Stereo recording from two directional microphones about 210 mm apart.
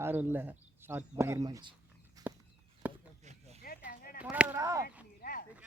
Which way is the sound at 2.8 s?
5° right (ahead or behind).